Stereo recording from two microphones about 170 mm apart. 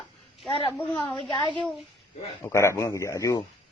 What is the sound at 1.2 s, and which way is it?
Speech, 25° left (ahead or behind).